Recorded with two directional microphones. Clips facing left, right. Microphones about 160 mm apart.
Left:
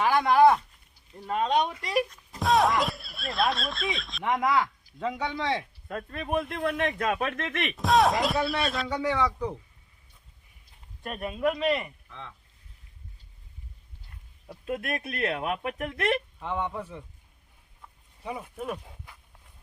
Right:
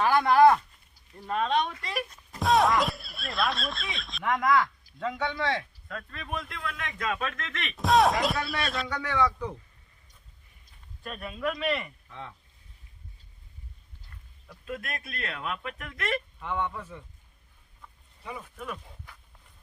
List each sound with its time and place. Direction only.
0.0 s speech: 15° left (ahead or behind)
2.3 s speech: centre (ahead or behind)
4.2 s speech: 20° left (ahead or behind)
5.9 s speech: 35° left (ahead or behind)
6.1 s speech: 50° left (ahead or behind)
7.8 s speech: centre (ahead or behind)
8.9 s speech: 30° left (ahead or behind)
11.3 s speech: 25° left (ahead or behind)
12.0 s speech: 5° right (ahead or behind)
14.4 s a sound: 40° left (ahead or behind)
14.8 s speech: 55° left (ahead or behind)
15.9 s speech: 30° left (ahead or behind)
18.2 s speech: 15° left (ahead or behind)